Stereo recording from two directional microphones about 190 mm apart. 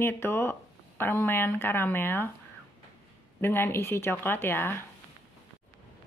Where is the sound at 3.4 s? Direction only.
10° left (ahead or behind).